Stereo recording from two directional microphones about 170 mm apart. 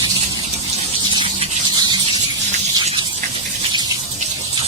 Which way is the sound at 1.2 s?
25° right (ahead or behind).